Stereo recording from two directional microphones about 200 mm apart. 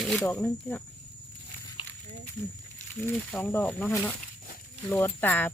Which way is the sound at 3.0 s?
10° left (ahead or behind).